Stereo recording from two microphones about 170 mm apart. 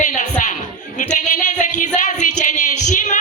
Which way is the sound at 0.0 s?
45° left (ahead or behind).